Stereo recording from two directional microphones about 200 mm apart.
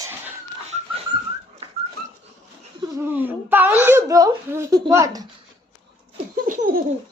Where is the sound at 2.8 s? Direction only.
10° right (ahead or behind).